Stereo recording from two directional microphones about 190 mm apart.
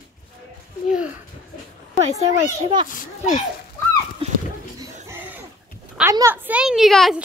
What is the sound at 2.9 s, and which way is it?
Speech, 45° left (ahead or behind).